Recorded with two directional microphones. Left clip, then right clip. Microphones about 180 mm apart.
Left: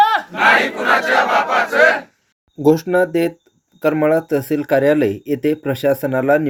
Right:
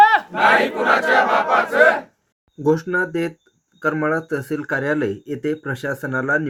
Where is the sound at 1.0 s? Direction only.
70° right (ahead or behind).